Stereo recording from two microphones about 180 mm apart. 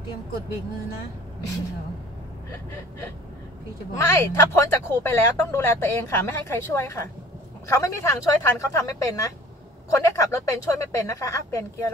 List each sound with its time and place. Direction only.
3.9 s speech: 15° left (ahead or behind)